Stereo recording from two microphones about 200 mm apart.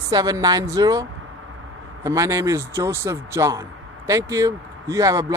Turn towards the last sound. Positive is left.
turn(degrees=-15)  # may be behind; listen again after turning